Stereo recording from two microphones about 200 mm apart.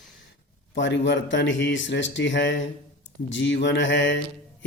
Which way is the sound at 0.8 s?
65° left (ahead or behind).